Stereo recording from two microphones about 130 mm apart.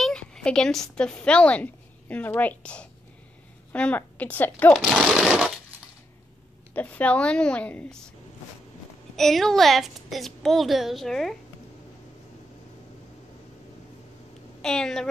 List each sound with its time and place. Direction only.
0.0 s a woman's voice: 5° left (ahead or behind)
4.7 s a woman's voice: 5° right (ahead or behind)
6.7 s a woman's voice: 10° left (ahead or behind)
9.1 s a woman's voice: 5° left (ahead or behind)
14.6 s a woman's voice: 5° left (ahead or behind)